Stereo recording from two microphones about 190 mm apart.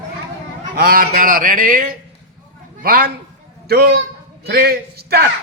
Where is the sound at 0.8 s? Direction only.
50° right (ahead or behind).